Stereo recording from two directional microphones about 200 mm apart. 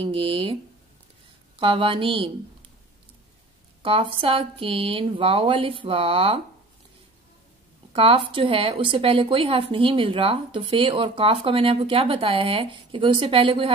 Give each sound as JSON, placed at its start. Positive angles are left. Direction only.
{"t": 0.0, "sound": "a woman's voice", "side_deg": -25}
{"t": 1.6, "sound": "a woman's voice", "side_deg": -25}
{"t": 3.8, "sound": "a woman's voice", "side_deg": -25}
{"t": 7.9, "sound": "a woman's voice", "side_deg": -25}